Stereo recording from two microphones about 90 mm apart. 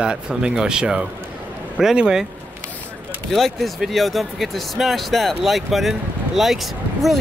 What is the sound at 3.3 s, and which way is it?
Speech, centre (ahead or behind).